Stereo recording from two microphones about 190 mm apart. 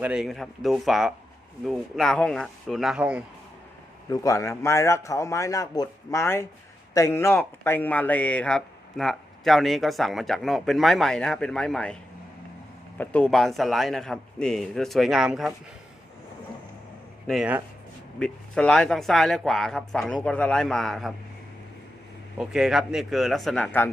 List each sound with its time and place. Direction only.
0.0 s speech: 5° right (ahead or behind)
4.1 s a man's voice: 15° left (ahead or behind)
13.0 s speech: 5° left (ahead or behind)
17.2 s speech: 5° right (ahead or behind)
22.4 s speech: 5° right (ahead or behind)